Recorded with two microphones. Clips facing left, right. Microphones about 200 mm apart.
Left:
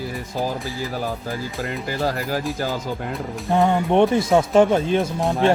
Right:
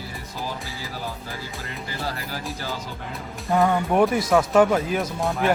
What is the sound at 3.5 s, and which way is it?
Speech, 20° left (ahead or behind).